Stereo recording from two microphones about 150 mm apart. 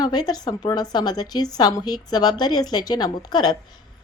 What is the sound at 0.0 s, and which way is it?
A woman's voice, 25° left (ahead or behind).